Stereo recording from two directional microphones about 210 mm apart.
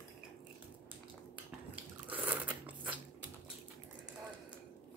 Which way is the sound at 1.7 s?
10° right (ahead or behind).